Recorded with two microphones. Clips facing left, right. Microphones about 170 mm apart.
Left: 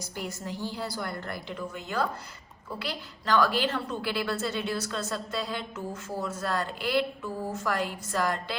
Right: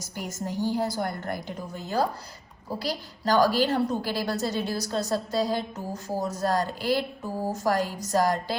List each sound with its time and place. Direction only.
0.2 s a woman's voice: 45° right (ahead or behind)